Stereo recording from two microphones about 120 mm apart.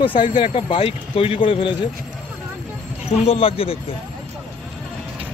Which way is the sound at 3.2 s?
50° left (ahead or behind).